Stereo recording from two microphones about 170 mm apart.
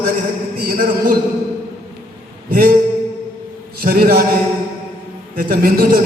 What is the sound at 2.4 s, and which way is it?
Speech, 60° right (ahead or behind).